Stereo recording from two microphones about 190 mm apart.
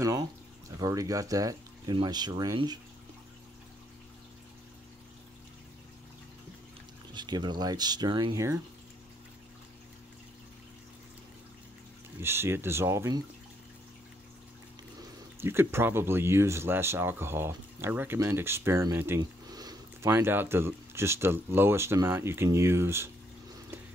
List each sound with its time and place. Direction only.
0.0 s speech: 15° right (ahead or behind)
7.2 s speech: 25° right (ahead or behind)
12.2 s speech: 15° right (ahead or behind)
15.4 s speech: 10° right (ahead or behind)